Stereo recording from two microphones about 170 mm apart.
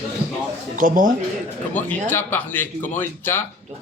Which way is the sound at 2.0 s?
10° left (ahead or behind).